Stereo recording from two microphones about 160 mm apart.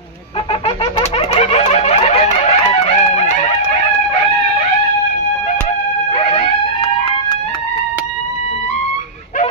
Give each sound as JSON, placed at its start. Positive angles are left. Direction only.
{"t": 0.7, "sound": "music", "side_deg": 45}
{"t": 6.1, "sound": "wail", "side_deg": 30}